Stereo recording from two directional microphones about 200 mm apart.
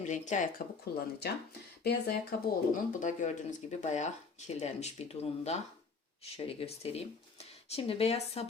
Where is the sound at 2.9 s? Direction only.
40° left (ahead or behind).